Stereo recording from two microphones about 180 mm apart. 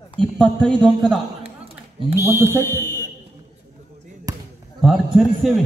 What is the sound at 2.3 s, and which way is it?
Speech, 15° right (ahead or behind).